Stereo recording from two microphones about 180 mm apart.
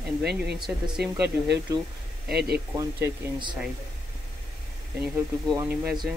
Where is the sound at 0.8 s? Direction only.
5° right (ahead or behind).